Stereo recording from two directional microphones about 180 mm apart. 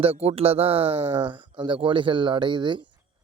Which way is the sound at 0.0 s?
35° right (ahead or behind).